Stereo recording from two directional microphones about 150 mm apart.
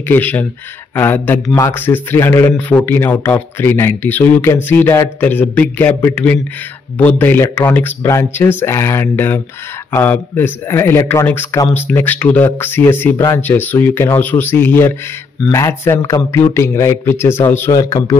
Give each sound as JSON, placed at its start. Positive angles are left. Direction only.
{"t": 0.1, "sound": "a man's voice", "side_deg": 10}